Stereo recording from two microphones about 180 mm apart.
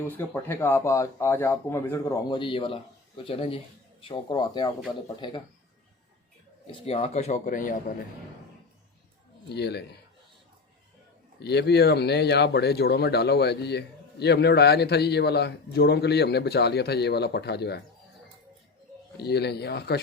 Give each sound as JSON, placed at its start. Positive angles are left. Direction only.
{"t": 0.1, "sound": "a man's voice", "side_deg": 10}
{"t": 6.7, "sound": "a man's voice", "side_deg": 30}
{"t": 9.5, "sound": "speech", "side_deg": 65}
{"t": 11.3, "sound": "speech", "side_deg": 65}
{"t": 19.1, "sound": "speech", "side_deg": 65}